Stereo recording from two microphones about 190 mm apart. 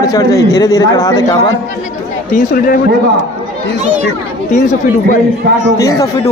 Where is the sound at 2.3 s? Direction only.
50° left (ahead or behind).